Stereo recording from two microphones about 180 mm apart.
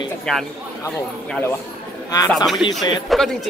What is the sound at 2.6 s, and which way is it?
Speech, 30° left (ahead or behind).